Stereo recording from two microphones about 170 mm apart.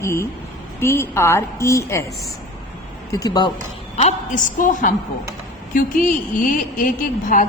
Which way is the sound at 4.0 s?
45° left (ahead or behind).